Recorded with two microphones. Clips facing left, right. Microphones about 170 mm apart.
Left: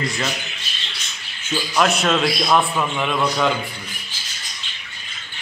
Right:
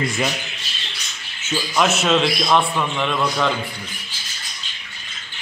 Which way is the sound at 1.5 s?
Centre (ahead or behind).